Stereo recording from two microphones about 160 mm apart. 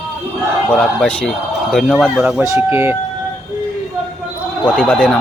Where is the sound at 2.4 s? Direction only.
15° right (ahead or behind).